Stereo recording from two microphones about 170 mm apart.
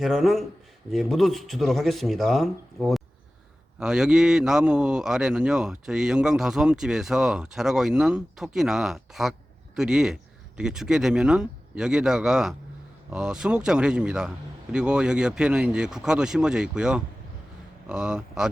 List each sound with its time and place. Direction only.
0.0 s a man's voice: centre (ahead or behind)